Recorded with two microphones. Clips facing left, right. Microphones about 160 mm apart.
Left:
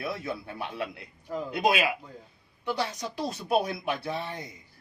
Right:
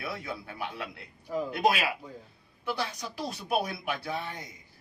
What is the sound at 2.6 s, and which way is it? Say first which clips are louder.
Speech: left 3 dB; 20° left (ahead or behind).